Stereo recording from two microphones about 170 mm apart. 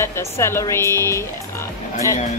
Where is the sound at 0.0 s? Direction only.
15° left (ahead or behind).